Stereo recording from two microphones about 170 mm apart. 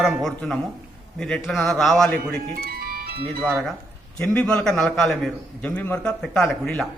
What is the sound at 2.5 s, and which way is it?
Music, 65° right (ahead or behind).